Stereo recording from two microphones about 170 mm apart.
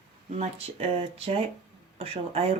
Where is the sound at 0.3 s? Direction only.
35° right (ahead or behind).